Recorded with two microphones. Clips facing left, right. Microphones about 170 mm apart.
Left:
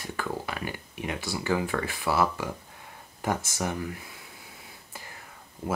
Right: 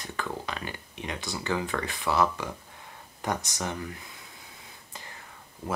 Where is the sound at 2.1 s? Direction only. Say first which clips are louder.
Even; 20° right (ahead or behind).